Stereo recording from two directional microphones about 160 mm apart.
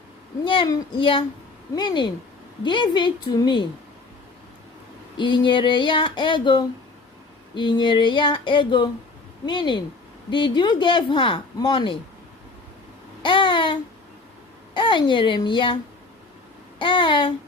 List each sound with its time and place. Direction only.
0.4 s a woman's voice: 30° left (ahead or behind)
5.1 s a woman's voice: 30° left (ahead or behind)
13.2 s babbling: 30° left (ahead or behind)
14.7 s speech: 30° left (ahead or behind)